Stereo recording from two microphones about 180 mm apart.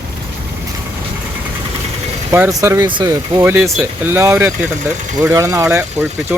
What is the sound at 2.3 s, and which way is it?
Speech, 15° right (ahead or behind).